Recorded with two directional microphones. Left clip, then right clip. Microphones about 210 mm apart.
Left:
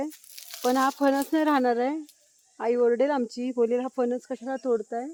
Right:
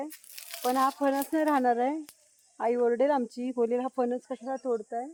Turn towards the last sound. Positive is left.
turn(degrees=55)  # may be behind; listen again after turning